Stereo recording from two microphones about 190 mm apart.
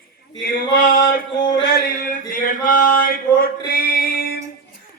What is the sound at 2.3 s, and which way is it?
Mantra, 45° left (ahead or behind).